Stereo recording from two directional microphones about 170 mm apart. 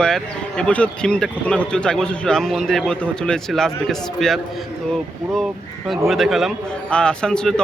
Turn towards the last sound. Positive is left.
turn(degrees=5)  # may be behind; listen again after turning